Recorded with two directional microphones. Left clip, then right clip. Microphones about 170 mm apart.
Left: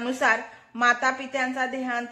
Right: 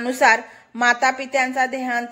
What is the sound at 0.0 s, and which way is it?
A woman's voice, 25° right (ahead or behind).